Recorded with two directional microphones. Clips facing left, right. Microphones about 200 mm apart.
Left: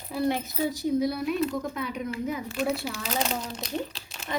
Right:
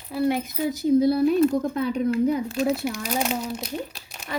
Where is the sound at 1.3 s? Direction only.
50° right (ahead or behind).